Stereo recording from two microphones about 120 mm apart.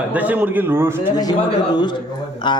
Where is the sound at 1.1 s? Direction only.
35° left (ahead or behind).